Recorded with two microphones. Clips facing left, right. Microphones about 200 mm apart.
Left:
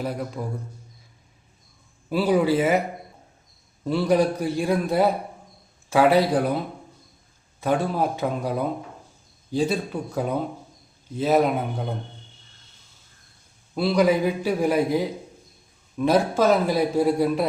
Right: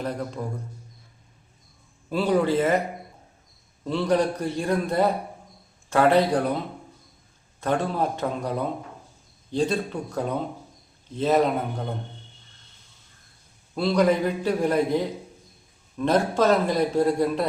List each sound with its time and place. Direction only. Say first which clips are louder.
0.0 s a man's voice: left 1 dB; 5° left (ahead or behind)
2.0 s a man's voice: left 2 dB; 5° left (ahead or behind)
3.8 s a man's voice: left 2 dB; 10° left (ahead or behind)
7.6 s a man's voice: left 2 dB; 5° left (ahead or behind)
13.7 s a man's voice: left 1 dB; 5° left (ahead or behind)